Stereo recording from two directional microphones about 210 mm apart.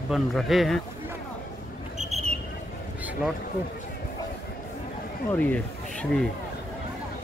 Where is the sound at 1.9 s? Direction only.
30° right (ahead or behind).